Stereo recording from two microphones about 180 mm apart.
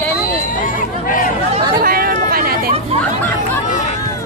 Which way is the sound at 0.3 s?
50° left (ahead or behind).